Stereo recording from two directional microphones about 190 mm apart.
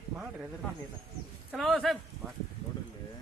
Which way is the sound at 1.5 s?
Centre (ahead or behind).